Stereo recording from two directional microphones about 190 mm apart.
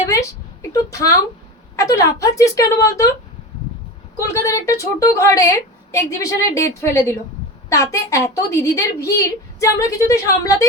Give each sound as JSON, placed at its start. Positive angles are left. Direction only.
{"t": 0.0, "sound": "a sound", "side_deg": 15}
{"t": 0.7, "sound": "a woman's voice", "side_deg": 15}
{"t": 4.4, "sound": "a woman's voice", "side_deg": 15}